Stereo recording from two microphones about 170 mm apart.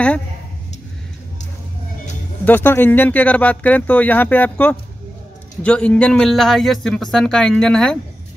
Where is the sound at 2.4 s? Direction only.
10° left (ahead or behind).